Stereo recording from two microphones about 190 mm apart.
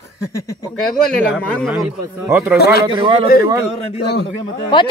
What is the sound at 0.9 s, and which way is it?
Speech, 5° left (ahead or behind).